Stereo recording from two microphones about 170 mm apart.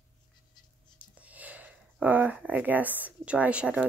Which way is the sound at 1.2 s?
10° right (ahead or behind).